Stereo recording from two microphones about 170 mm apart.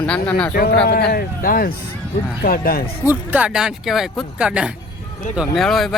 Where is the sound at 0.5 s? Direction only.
60° left (ahead or behind).